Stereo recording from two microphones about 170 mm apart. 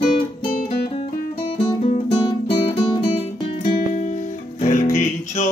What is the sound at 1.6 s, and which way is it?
Music, 30° left (ahead or behind).